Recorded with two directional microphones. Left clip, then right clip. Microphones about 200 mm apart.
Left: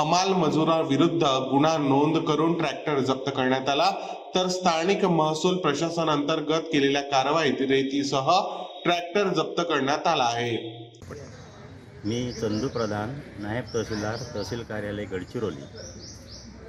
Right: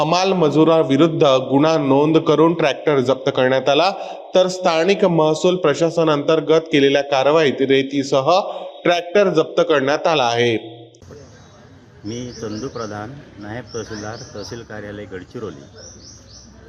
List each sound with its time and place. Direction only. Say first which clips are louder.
0.0 s a man's voice: right 6 dB; 40° right (ahead or behind)
12.0 s a man's voice: even; centre (ahead or behind)